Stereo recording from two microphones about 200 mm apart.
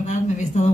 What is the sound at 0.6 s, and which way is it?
Speech, 35° left (ahead or behind).